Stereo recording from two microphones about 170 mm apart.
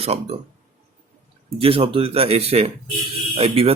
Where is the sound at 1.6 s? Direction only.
30° right (ahead or behind).